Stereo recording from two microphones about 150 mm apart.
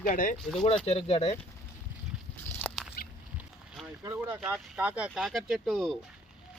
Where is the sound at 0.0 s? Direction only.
65° left (ahead or behind).